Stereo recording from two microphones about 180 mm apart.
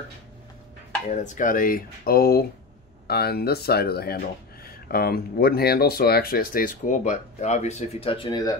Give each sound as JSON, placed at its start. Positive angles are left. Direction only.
{"t": 1.1, "sound": "speech", "side_deg": 45}